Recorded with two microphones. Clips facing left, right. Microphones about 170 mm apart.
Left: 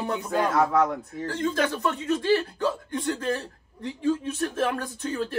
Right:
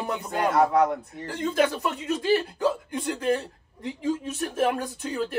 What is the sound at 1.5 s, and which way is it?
Speech, 15° right (ahead or behind).